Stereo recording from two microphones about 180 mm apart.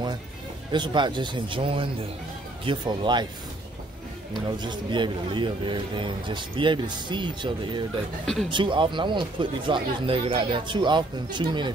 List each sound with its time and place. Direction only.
0.7 s a man's voice: 25° right (ahead or behind)
4.5 s a man's voice: 25° right (ahead or behind)